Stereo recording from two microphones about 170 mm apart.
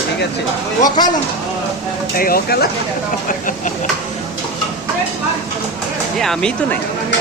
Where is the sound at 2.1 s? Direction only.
60° left (ahead or behind).